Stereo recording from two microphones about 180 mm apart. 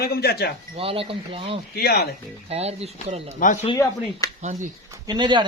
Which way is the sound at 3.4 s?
45° left (ahead or behind).